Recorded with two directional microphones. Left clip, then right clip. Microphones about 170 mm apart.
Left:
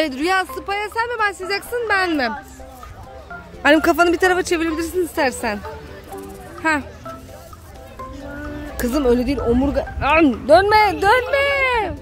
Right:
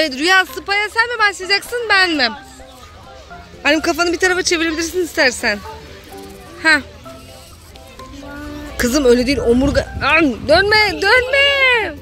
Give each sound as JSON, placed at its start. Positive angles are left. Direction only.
{"t": 0.0, "sound": "speech", "side_deg": 10}
{"t": 0.3, "sound": "speech", "side_deg": -5}
{"t": 3.6, "sound": "speech", "side_deg": 25}
{"t": 4.6, "sound": "speech", "side_deg": 0}
{"t": 6.6, "sound": "speech", "side_deg": 0}
{"t": 8.7, "sound": "speech", "side_deg": -5}
{"t": 9.9, "sound": "speech", "side_deg": 5}